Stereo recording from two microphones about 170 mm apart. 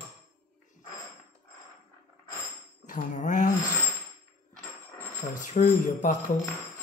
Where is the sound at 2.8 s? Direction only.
45° left (ahead or behind).